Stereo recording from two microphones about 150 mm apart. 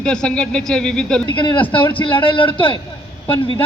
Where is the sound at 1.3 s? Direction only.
30° left (ahead or behind).